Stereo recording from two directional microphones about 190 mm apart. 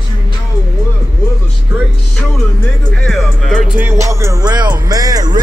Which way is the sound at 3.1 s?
Centre (ahead or behind).